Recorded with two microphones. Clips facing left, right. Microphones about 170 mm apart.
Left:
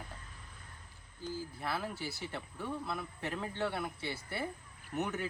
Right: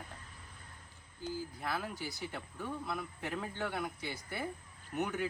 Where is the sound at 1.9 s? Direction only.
15° right (ahead or behind).